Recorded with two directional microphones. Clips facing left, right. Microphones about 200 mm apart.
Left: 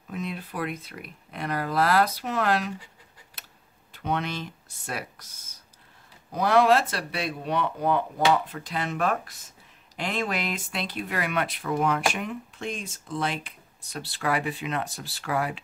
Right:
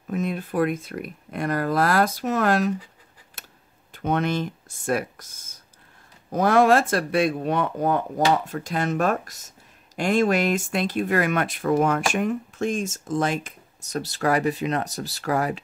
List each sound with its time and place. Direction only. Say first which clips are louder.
0.1 s speech: right 7 dB; 50° right (ahead or behind)
3.4 s tick-tock: right 5 dB; 50° right (ahead or behind)
3.9 s speech: right 6 dB; 50° right (ahead or behind)